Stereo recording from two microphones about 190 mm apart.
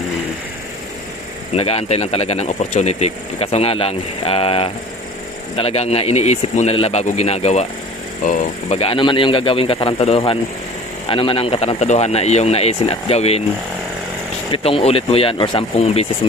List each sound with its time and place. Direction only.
1.5 s speech: 30° left (ahead or behind)
14.5 s speech: 30° left (ahead or behind)